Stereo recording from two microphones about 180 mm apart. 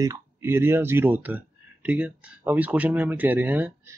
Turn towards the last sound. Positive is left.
turn(degrees=-10)  # may be behind; listen again after turning